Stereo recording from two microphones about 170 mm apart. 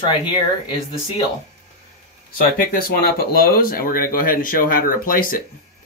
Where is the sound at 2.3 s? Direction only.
55° left (ahead or behind).